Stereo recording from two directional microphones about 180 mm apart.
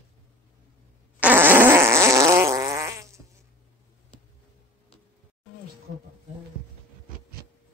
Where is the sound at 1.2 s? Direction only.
10° right (ahead or behind).